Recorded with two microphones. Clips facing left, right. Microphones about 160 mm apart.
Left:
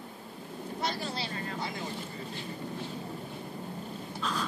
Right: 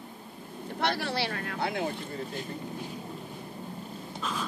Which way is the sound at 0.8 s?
70° right (ahead or behind).